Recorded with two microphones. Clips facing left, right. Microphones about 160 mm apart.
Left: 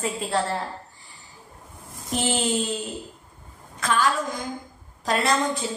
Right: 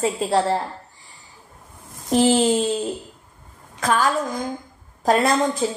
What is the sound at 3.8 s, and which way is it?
Speech, 45° right (ahead or behind).